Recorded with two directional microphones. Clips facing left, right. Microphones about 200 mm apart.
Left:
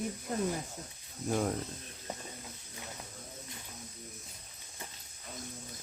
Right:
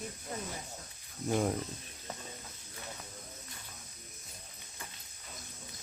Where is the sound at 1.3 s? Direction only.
5° right (ahead or behind).